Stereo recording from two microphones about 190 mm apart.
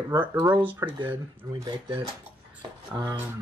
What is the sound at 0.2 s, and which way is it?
Speech, 10° right (ahead or behind).